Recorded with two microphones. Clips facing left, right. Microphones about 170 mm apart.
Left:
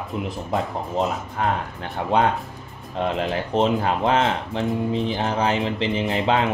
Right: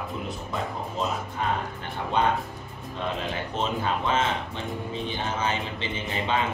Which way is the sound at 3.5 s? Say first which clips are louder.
Left 8 dB; 75° left (ahead or behind).